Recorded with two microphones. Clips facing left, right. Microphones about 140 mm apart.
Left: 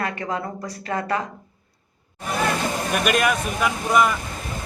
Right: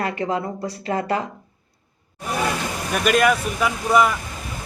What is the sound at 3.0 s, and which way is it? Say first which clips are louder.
Speech: right 4 dB; centre (ahead or behind).